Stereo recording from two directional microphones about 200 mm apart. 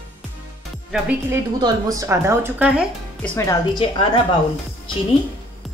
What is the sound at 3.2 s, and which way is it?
A woman's voice, 10° left (ahead or behind).